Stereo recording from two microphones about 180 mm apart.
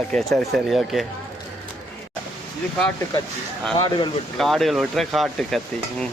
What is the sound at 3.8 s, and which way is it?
Speech, 25° left (ahead or behind).